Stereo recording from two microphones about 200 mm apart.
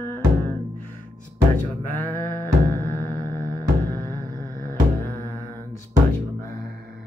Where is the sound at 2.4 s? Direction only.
10° left (ahead or behind).